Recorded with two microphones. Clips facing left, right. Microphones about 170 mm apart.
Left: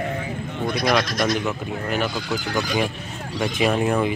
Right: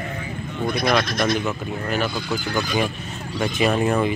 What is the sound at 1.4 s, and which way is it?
Speech, 15° left (ahead or behind).